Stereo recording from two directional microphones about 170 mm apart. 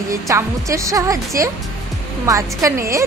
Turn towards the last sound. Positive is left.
turn(degrees=-20)  # may be behind; listen again after turning